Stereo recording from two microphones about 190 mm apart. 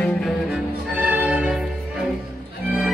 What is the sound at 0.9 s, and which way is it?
Music, 10° right (ahead or behind).